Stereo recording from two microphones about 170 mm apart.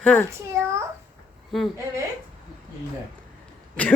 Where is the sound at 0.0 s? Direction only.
10° left (ahead or behind).